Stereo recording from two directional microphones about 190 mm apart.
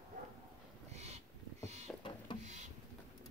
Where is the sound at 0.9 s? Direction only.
35° right (ahead or behind).